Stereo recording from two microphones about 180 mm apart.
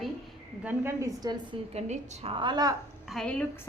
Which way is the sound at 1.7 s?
40° right (ahead or behind).